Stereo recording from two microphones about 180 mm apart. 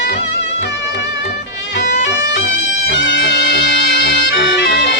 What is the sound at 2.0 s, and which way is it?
Music, 80° left.